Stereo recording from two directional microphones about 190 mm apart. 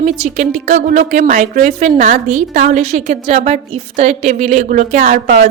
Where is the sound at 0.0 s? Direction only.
40° right (ahead or behind).